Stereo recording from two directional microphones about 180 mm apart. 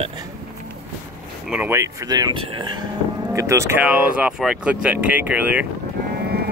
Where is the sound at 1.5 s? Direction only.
10° right (ahead or behind).